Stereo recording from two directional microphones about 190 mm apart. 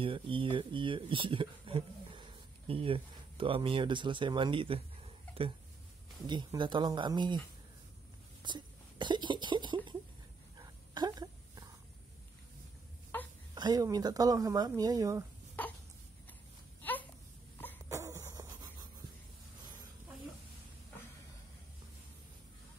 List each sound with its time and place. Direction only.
0.0 s speech: 30° right (ahead or behind)
6.2 s speech: 25° right (ahead or behind)
8.4 s speech: 25° right (ahead or behind)
10.6 s a sound: 20° right (ahead or behind)
13.1 s wail: 10° left (ahead or behind)
13.6 s speech: 20° right (ahead or behind)
15.6 s hiccup: 10° left (ahead or behind)
16.8 s a sound: 10° left (ahead or behind)
17.8 s a sound: 15° right (ahead or behind)